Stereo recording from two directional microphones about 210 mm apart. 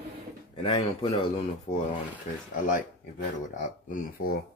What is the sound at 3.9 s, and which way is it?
Speech, 45° left (ahead or behind).